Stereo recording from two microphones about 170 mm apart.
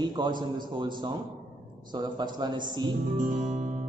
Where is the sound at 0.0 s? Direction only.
25° right (ahead or behind).